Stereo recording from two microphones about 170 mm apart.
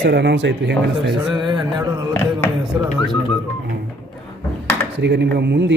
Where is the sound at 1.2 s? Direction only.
25° right (ahead or behind).